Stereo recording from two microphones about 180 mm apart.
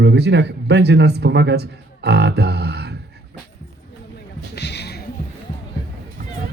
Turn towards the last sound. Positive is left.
turn(degrees=65)  # may be behind; listen again after turning